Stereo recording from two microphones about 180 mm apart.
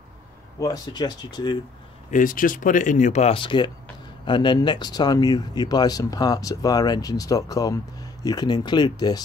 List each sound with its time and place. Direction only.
0.6 s speech: 20° left (ahead or behind)
2.0 s speech: 50° left (ahead or behind); by 9.2 s 25° left (ahead or behind)